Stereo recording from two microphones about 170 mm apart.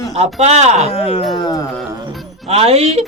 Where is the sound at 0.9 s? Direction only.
35° left (ahead or behind).